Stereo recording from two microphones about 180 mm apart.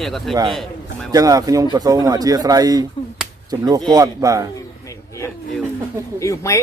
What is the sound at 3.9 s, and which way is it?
Speech, 20° right (ahead or behind).